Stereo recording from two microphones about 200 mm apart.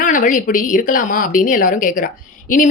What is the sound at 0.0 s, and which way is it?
Speech, 40° left (ahead or behind).